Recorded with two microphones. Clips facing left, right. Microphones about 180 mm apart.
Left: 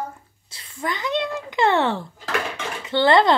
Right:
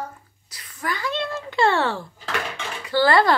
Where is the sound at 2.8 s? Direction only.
25° left (ahead or behind).